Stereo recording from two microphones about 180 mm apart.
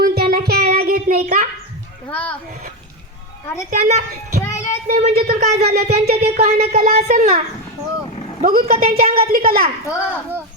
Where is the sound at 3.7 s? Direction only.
40° right (ahead or behind).